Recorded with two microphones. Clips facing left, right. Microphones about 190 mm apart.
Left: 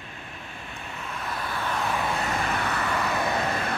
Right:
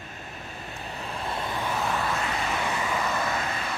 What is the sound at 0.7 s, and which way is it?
Vehicle, 35° right (ahead or behind).